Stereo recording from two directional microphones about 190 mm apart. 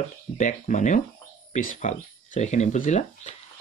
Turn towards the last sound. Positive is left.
turn(degrees=40)  # may be behind; listen again after turning